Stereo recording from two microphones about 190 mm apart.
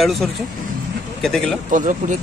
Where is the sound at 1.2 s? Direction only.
5° left (ahead or behind).